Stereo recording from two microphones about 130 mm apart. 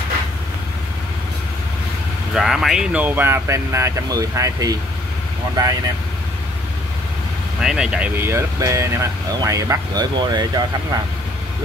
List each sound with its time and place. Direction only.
2.3 s speech: centre (ahead or behind); by 4.7 s 25° right (ahead or behind)
7.6 s speech: 5° right (ahead or behind)
8.2 s speech: 20° right (ahead or behind)